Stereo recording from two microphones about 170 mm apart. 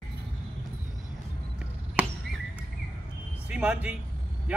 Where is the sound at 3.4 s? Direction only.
5° right (ahead or behind).